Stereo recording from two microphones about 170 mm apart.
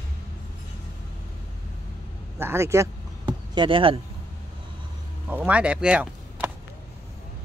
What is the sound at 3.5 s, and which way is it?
Speech, 30° right (ahead or behind).